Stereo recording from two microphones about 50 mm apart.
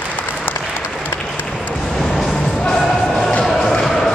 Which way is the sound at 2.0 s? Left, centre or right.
Centre.